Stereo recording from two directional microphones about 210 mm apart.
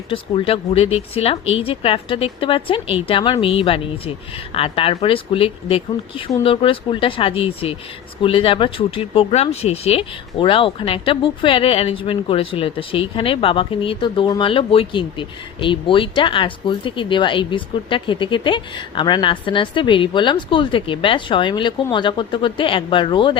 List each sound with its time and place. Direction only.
0.1 s speech: 25° left (ahead or behind)